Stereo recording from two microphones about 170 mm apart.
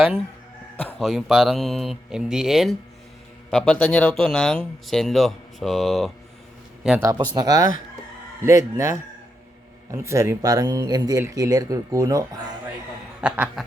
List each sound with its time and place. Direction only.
0.8 s a sound: 10° left (ahead or behind)
1.0 s speech: centre (ahead or behind)
7.3 s speech: 20° right (ahead or behind)
13.2 s speech: 5° right (ahead or behind)